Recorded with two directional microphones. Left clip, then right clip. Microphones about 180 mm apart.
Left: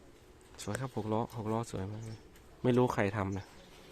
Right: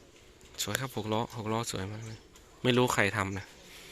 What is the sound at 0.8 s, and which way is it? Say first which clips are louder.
Speech: right 2 dB; 5° left (ahead or behind).